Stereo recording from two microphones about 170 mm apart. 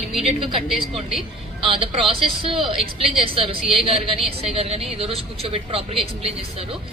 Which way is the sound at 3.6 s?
Centre (ahead or behind).